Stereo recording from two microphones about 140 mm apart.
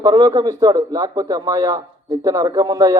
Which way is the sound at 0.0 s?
30° right (ahead or behind).